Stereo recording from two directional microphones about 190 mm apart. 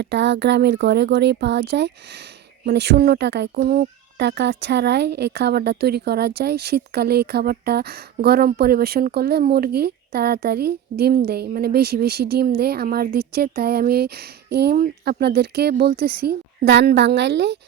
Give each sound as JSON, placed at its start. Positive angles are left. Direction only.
{"t": 0.0, "sound": "a woman's voice", "side_deg": -65}